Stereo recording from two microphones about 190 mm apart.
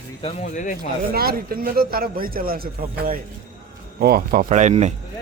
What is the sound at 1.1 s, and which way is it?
A man's voice, 55° right (ahead or behind).